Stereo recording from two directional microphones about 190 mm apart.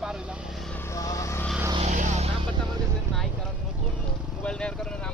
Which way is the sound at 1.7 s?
35° right (ahead or behind).